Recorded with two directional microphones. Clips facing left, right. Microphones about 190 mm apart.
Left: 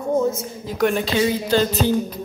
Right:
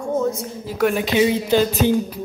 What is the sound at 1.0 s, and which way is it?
Speech, 20° right (ahead or behind).